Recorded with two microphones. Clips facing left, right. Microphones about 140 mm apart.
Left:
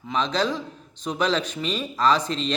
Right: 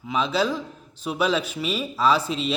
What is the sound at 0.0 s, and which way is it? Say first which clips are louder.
A man's voice: right 1 dB; 5° right (ahead or behind).